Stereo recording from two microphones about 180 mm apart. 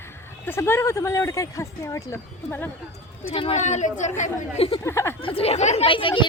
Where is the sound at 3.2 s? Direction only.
30° left (ahead or behind).